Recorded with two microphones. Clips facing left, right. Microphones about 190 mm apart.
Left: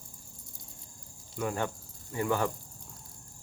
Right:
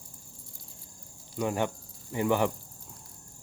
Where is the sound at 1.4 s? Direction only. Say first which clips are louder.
Right 3 dB; 20° right (ahead or behind).